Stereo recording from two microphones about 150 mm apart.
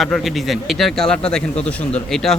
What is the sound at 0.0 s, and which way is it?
Speech, centre (ahead or behind).